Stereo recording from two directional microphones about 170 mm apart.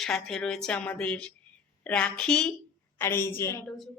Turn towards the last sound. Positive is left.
turn(degrees=15)  # may be behind; listen again after turning